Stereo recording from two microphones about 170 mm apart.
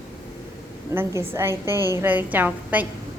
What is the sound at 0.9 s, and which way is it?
A woman's voice, 15° right (ahead or behind).